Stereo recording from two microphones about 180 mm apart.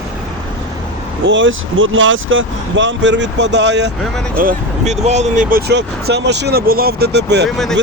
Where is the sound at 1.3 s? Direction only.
90° right; by 3.9 s 75° right (ahead or behind).